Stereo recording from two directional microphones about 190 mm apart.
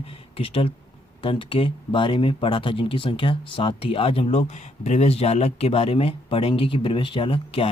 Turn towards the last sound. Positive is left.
turn(degrees=30)  # may be behind; listen again after turning